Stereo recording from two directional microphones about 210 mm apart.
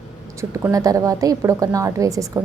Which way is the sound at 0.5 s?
15° right (ahead or behind).